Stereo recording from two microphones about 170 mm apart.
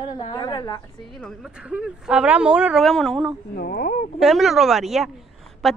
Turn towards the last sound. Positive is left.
turn(degrees=0)  # may be behind; listen again after turning